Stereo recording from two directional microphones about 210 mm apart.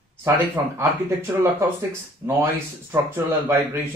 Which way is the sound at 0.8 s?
15° right (ahead or behind).